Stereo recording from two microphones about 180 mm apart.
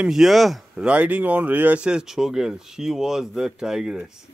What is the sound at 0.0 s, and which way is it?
Speech, centre (ahead or behind).